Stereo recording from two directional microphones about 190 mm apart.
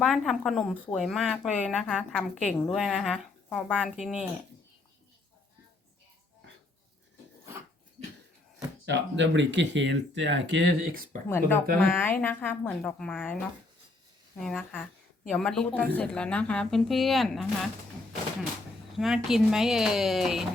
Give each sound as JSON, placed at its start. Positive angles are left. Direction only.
{"t": 0.0, "sound": "a woman's voice", "side_deg": 0}
{"t": 8.9, "sound": "speech", "side_deg": -70}
{"t": 11.3, "sound": "a woman's voice", "side_deg": 10}
{"t": 18.9, "sound": "a woman's voice", "side_deg": 0}